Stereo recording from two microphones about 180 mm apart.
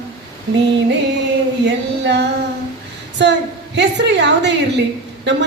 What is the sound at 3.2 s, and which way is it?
A woman's voice, 80° right.